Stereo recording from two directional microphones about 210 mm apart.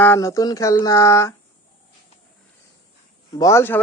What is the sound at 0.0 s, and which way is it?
Speech, 10° left (ahead or behind).